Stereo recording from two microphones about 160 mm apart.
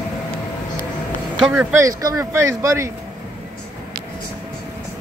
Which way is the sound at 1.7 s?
20° right (ahead or behind).